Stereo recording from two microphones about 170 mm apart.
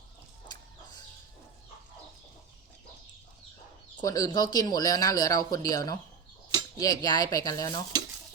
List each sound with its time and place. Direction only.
4.0 s speech: 20° left (ahead or behind)